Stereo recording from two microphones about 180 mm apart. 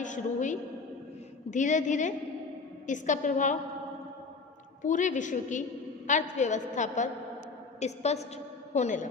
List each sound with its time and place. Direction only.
0.0 s a woman's voice: 45° left (ahead or behind)
4.8 s a woman's voice: 45° left (ahead or behind)